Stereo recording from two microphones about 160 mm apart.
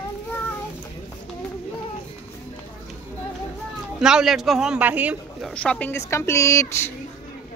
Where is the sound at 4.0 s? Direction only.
5° right (ahead or behind).